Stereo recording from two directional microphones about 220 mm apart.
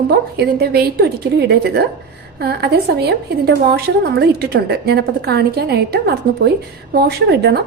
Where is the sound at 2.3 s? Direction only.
45° right (ahead or behind).